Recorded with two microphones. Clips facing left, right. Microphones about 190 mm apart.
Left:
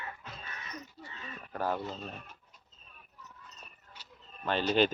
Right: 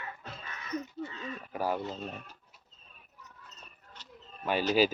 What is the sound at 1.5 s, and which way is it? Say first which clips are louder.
Speech: right 1 dB; 10° right (ahead or behind).